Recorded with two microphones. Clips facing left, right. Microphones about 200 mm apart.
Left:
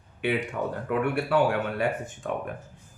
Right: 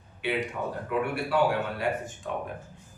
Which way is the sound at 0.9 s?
60° left (ahead or behind).